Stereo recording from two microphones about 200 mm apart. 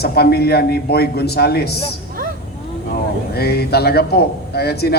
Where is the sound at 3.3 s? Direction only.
55° left (ahead or behind).